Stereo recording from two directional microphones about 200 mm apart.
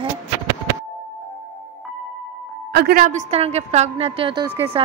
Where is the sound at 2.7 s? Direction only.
50° right (ahead or behind).